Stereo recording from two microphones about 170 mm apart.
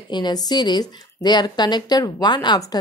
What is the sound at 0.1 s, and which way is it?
A woman's voice, 25° left (ahead or behind).